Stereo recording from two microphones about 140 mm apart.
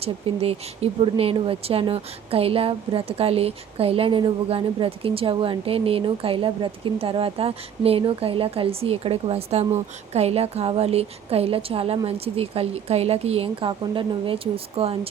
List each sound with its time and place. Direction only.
0.0 s speech: 45° right (ahead or behind)